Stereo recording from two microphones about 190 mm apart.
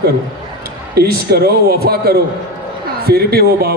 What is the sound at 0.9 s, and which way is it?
A man's voice, 55° right (ahead or behind).